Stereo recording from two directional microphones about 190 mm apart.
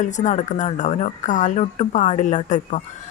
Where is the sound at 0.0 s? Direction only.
40° left (ahead or behind).